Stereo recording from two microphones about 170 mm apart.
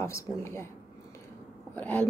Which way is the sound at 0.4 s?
15° left (ahead or behind).